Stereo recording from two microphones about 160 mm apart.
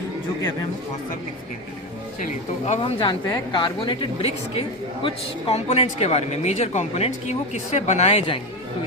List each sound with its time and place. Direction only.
2.2 s speech: 45° left (ahead or behind)
2.8 s a woman's voice: 30° left (ahead or behind)